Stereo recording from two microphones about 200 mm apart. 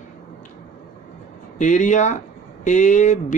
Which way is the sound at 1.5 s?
40° left (ahead or behind).